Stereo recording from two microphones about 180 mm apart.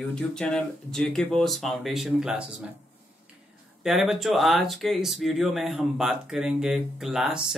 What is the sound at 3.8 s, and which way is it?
Speech, centre (ahead or behind).